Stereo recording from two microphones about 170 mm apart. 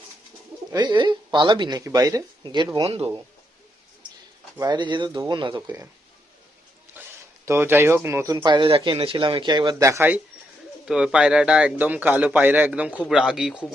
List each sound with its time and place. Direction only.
0.7 s speech: 25° right (ahead or behind)
4.6 s speech: 25° right (ahead or behind)
7.0 s a sound: 10° right (ahead or behind)
7.4 s a man's voice: 15° right (ahead or behind)